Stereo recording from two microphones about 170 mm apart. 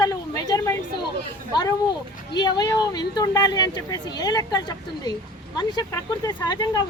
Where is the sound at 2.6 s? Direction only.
25° left (ahead or behind).